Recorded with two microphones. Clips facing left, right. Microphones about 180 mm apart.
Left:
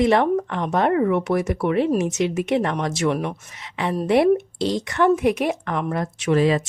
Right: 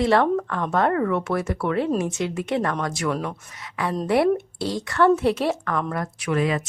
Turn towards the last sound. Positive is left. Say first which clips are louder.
# left 5 dB
turn(degrees=30)  # may be behind; listen again after turning